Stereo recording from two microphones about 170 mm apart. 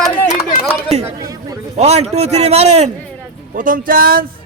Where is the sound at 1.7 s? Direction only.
40° right (ahead or behind).